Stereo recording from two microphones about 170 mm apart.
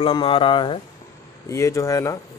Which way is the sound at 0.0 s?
30° left (ahead or behind).